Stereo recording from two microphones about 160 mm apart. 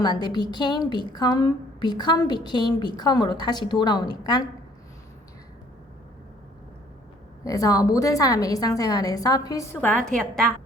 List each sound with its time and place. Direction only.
0.0 s a woman's voice: 25° left (ahead or behind)
7.4 s a woman's voice: 20° left (ahead or behind); by 10.4 s 5° left (ahead or behind)